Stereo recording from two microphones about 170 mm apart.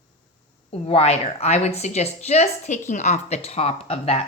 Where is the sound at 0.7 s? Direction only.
40° left (ahead or behind).